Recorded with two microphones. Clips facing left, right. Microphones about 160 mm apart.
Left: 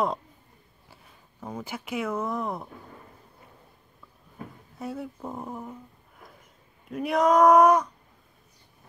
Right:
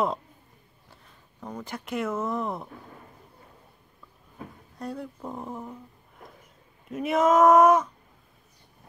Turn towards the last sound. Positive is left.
turn(degrees=0)  # may be behind; listen again after turning